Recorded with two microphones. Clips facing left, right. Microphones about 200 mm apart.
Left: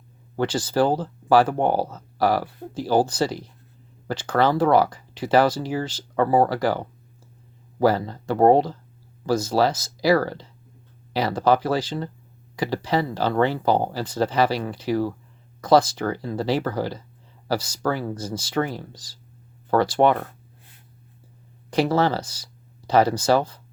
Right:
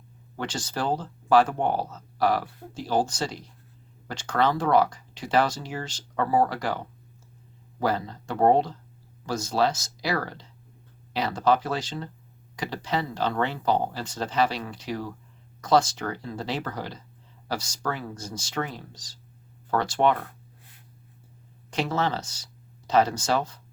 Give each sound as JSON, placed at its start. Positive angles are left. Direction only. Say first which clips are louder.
{"t": 0.3, "sound": "speech", "louder": "left 10 dB", "side_deg": 35}
{"t": 4.1, "sound": "speech", "louder": "left 4 dB", "side_deg": 35}
{"t": 21.7, "sound": "speech", "louder": "left 6 dB", "side_deg": 35}